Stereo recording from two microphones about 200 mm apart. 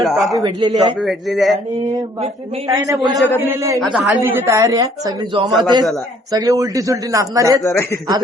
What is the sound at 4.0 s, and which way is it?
Speech, 5° right (ahead or behind).